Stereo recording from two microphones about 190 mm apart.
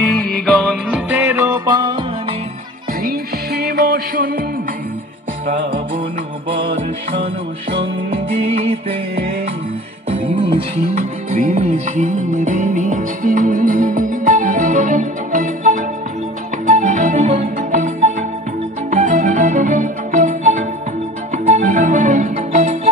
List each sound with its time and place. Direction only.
0.6 s music: centre (ahead or behind)
1.3 s music: 15° right (ahead or behind)
3.0 s music: 55° right (ahead or behind)
10.2 s music: 25° right (ahead or behind)
11.5 s music: 40° right (ahead or behind)
21.5 s music: 40° right (ahead or behind)